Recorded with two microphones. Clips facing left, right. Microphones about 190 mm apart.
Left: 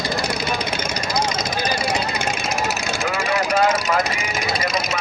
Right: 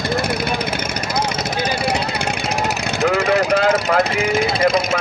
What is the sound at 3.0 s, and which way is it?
Speech, 60° right (ahead or behind).